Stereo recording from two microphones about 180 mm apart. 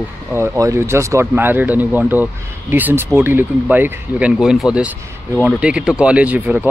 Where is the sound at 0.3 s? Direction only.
15° right (ahead or behind).